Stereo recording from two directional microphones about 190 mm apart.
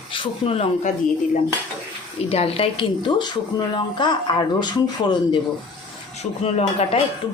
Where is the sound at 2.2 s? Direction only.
30° left (ahead or behind).